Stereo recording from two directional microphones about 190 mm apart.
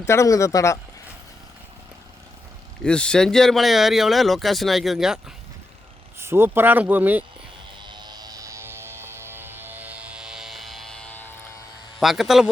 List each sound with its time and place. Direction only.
0.0 s speech: 15° left (ahead or behind)
2.8 s speech: 5° left (ahead or behind)
7.9 s music: 20° right (ahead or behind); by 11.3 s 10° left (ahead or behind)
11.9 s speech: centre (ahead or behind)